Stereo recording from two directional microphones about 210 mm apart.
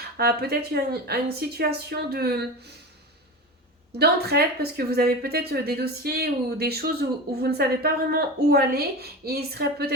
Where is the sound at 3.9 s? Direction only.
50° right (ahead or behind).